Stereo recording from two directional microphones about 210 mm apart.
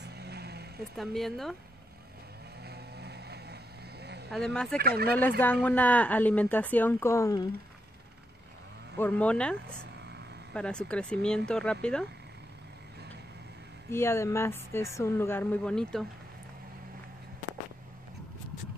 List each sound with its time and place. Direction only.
0.0 s vehicle: 50° right (ahead or behind)
0.9 s speech: centre (ahead or behind)
2.6 s vehicle: 50° right (ahead or behind)
4.3 s speech: centre (ahead or behind)
4.7 s speech: 50° right (ahead or behind)
5.4 s a woman's voice: 10° left (ahead or behind)
8.9 s speech: 10° left (ahead or behind)
13.8 s a woman's voice: 10° left (ahead or behind)